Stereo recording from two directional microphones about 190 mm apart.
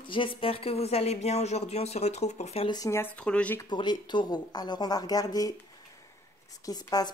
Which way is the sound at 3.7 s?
25° left (ahead or behind).